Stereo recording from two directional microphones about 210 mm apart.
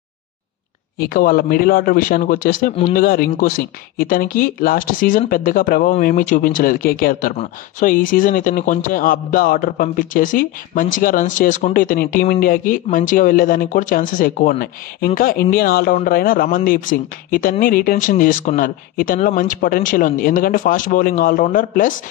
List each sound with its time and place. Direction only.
0.9 s a man's voice: 45° left (ahead or behind)